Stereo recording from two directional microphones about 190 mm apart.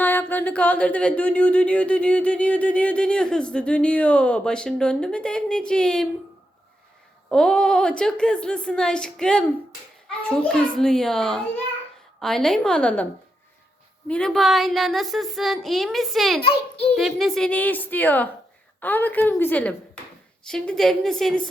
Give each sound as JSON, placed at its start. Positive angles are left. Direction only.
{"t": 0.0, "sound": "a sound", "side_deg": 10}
{"t": 7.3, "sound": "speech", "side_deg": 5}
{"t": 14.1, "sound": "speech", "side_deg": 5}
{"t": 16.4, "sound": "a child's voice", "side_deg": 30}
{"t": 16.9, "sound": "a sound", "side_deg": 0}
{"t": 20.4, "sound": "speech", "side_deg": 5}